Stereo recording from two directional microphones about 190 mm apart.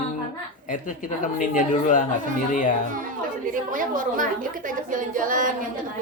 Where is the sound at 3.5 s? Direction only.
45° right (ahead or behind).